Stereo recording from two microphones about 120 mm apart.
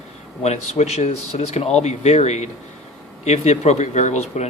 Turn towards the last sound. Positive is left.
turn(degrees=70)  # may be behind; listen again after turning